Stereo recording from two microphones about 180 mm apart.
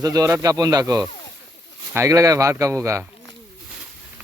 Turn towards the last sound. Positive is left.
turn(degrees=-15)  # may be behind; listen again after turning